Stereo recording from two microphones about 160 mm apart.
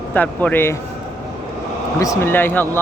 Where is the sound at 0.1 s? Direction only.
10° left (ahead or behind).